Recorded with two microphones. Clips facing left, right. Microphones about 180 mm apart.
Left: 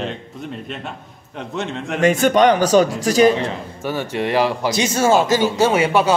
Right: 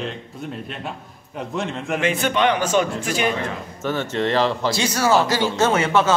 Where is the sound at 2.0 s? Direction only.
45° left (ahead or behind).